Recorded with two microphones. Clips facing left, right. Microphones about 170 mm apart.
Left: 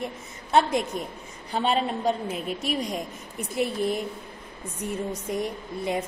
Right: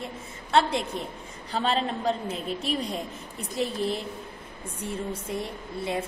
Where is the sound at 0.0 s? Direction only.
15° left (ahead or behind).